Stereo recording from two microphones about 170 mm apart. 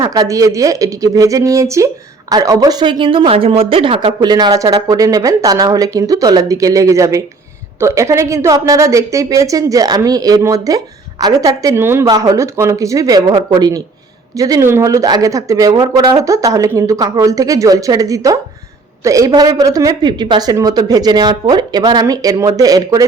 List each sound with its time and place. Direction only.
0.0 s speech: 20° right (ahead or behind)